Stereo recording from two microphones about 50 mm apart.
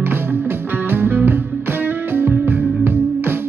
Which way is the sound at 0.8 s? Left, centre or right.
Right.